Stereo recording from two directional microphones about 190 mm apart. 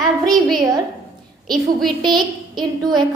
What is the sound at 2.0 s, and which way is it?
A woman's voice, 25° right (ahead or behind).